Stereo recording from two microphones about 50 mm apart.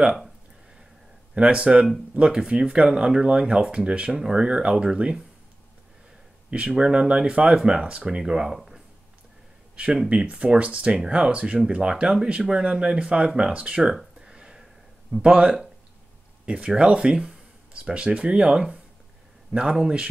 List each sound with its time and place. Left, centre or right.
1.3 s speech: right
6.5 s speech: centre
8.5 s a sound: centre
10.4 s speech: right
14.2 s a sound: centre
15.2 s speech: right